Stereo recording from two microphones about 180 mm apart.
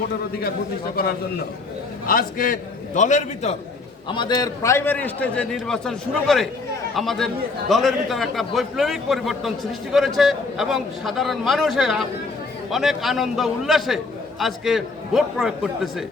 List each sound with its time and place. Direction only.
2.0 s a man's voice: 50° left (ahead or behind)
4.1 s a man's voice: 25° left (ahead or behind); by 16.0 s centre (ahead or behind)